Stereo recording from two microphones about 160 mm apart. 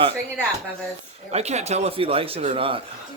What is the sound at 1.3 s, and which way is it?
A man's voice, 45° right (ahead or behind).